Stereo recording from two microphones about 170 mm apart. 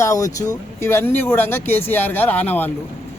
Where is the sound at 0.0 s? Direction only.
20° left (ahead or behind).